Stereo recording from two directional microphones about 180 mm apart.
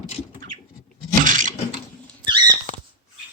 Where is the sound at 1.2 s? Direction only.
45° right (ahead or behind).